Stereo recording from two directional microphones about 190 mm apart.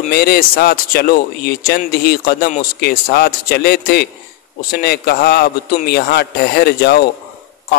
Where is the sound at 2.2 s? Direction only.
55° left (ahead or behind).